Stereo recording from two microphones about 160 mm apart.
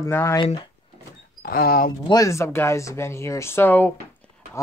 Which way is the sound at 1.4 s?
65° left (ahead or behind).